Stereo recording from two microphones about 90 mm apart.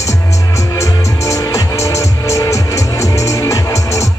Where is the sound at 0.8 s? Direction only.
35° left (ahead or behind).